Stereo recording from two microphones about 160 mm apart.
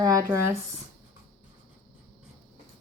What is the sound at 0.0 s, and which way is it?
Speech, 20° right (ahead or behind).